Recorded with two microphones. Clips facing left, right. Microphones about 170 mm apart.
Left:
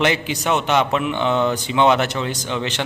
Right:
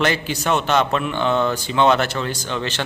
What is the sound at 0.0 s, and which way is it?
Speech, 20° left (ahead or behind).